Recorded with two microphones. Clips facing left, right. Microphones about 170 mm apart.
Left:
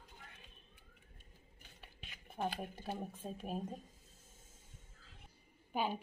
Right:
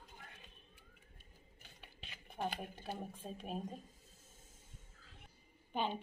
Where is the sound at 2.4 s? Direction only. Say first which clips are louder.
Left 1 dB; centre (ahead or behind).